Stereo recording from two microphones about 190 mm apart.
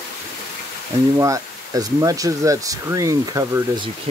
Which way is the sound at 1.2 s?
20° right (ahead or behind).